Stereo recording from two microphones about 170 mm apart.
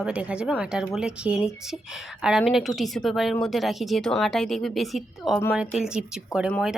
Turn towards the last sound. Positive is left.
turn(degrees=5)  # may be behind; listen again after turning